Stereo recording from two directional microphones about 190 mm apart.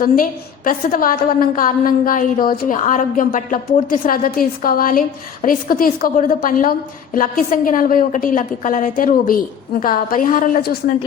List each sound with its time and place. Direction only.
0.0 s a woman's voice: 45° left (ahead or behind)